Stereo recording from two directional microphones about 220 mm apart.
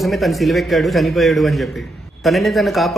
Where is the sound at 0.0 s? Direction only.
Centre (ahead or behind).